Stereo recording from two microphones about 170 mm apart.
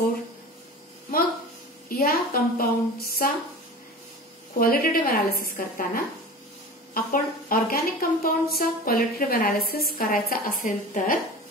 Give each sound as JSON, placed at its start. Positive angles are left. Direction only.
{"t": 1.9, "sound": "a woman's voice", "side_deg": 60}
{"t": 4.6, "sound": "a woman's voice", "side_deg": 55}